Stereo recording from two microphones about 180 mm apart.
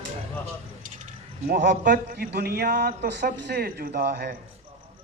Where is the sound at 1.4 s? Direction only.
65° right (ahead or behind).